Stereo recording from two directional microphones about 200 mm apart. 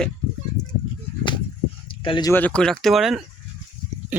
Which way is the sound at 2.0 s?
25° left (ahead or behind).